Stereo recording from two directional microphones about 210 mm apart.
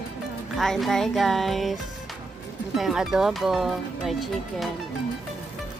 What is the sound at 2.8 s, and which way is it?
Speech, centre (ahead or behind).